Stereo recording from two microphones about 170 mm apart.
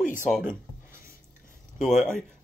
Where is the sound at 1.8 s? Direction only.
50° left (ahead or behind).